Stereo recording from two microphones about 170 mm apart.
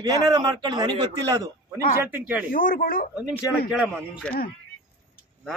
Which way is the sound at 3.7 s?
5° right (ahead or behind).